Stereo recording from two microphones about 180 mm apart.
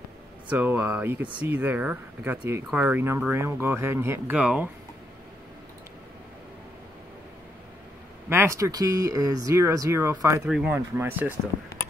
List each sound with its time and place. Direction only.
0.5 s speech: 10° right (ahead or behind)
8.3 s speech: 15° right (ahead or behind)
10.4 s speech: 5° right (ahead or behind)